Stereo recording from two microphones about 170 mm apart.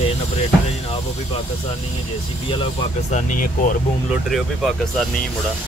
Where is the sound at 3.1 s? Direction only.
50° left (ahead or behind).